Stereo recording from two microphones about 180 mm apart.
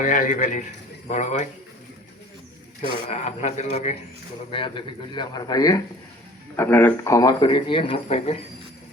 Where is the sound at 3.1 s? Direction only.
40° left (ahead or behind).